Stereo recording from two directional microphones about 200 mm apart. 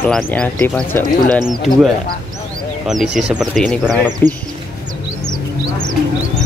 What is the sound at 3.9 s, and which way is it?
Speech, 20° right (ahead or behind).